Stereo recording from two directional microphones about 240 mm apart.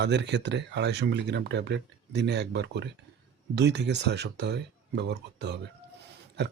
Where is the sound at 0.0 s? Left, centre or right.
Right.